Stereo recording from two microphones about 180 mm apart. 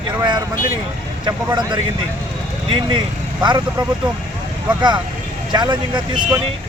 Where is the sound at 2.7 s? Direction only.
25° right (ahead or behind).